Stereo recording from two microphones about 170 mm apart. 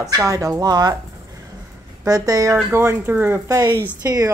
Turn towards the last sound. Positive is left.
turn(degrees=-20)  # may be behind; listen again after turning